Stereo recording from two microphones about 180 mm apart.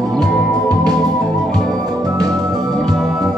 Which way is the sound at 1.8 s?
20° right (ahead or behind).